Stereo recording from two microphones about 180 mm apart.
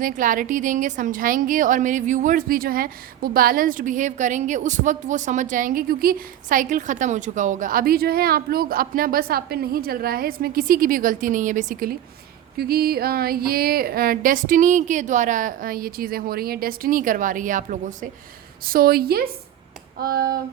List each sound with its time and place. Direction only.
0.0 s a woman's voice: 50° right (ahead or behind)